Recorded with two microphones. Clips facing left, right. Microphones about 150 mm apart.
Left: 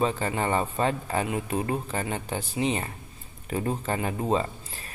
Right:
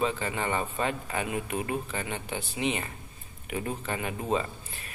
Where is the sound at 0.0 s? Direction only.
40° left (ahead or behind).